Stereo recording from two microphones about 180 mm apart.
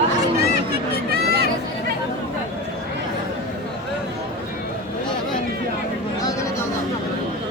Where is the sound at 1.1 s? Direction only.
65° right (ahead or behind).